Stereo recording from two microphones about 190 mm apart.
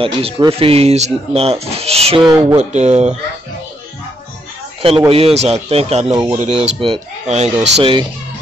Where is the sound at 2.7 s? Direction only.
35° right (ahead or behind).